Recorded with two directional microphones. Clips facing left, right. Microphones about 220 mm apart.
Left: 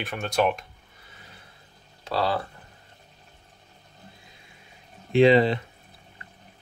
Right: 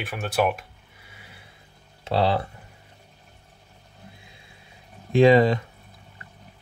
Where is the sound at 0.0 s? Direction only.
5° right (ahead or behind).